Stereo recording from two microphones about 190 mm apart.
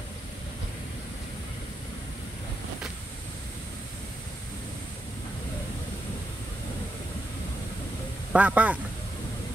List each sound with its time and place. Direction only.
8.3 s speech: 10° right (ahead or behind)